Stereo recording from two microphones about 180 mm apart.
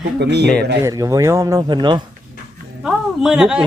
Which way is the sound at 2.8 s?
5° right (ahead or behind).